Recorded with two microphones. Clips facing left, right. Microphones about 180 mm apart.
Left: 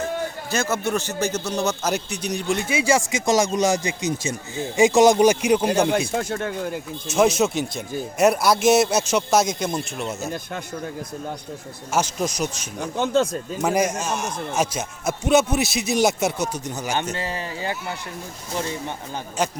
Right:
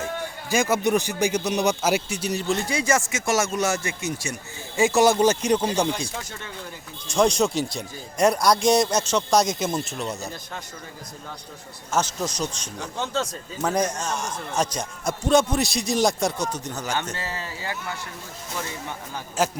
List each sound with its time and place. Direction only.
0.5 s a man's voice: 15° right (ahead or behind)
2.6 s a man's voice: 10° left (ahead or behind)
6.1 s speech: 55° left (ahead or behind)
7.1 s speech: 5° left (ahead or behind)
11.9 s a man's voice: 10° left (ahead or behind)
12.8 s speech: 55° left (ahead or behind)
13.6 s a man's voice: 10° left (ahead or behind)
19.4 s speech: 5° right (ahead or behind)